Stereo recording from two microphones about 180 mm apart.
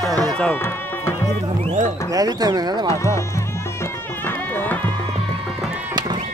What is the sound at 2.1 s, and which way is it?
Speech, 20° right (ahead or behind).